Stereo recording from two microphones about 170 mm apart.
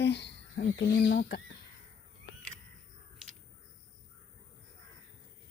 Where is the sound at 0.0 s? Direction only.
90° left.